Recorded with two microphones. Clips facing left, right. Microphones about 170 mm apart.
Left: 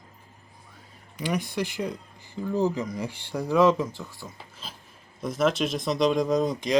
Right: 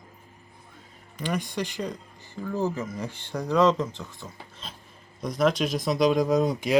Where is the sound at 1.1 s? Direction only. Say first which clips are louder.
Left 1 dB; 10° left (ahead or behind).